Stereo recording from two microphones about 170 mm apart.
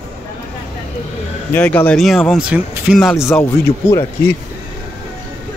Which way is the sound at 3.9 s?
20° left (ahead or behind).